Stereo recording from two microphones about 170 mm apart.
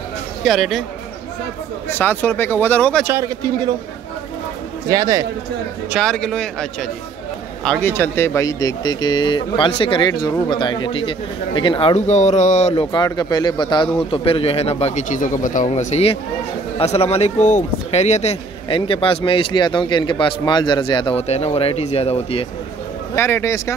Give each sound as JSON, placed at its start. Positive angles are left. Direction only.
{"t": 0.4, "sound": "speech", "side_deg": 0}
{"t": 1.9, "sound": "speech", "side_deg": 10}
{"t": 3.0, "sound": "a man's voice", "side_deg": -10}
{"t": 4.8, "sound": "speech", "side_deg": -20}
{"t": 5.9, "sound": "speech", "side_deg": 0}
{"t": 12.9, "sound": "speech", "side_deg": 25}
{"t": 23.1, "sound": "speech", "side_deg": 15}